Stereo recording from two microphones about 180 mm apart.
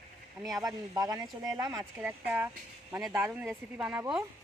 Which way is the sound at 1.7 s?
5° right (ahead or behind).